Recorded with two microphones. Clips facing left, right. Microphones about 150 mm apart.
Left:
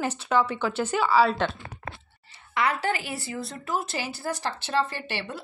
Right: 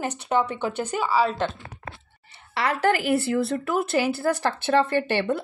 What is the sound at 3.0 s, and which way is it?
Speech, 65° right (ahead or behind).